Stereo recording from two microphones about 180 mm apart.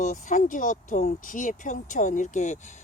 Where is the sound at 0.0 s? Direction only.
45° left (ahead or behind).